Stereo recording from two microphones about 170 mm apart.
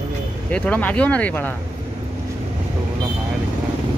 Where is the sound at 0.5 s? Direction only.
10° left (ahead or behind).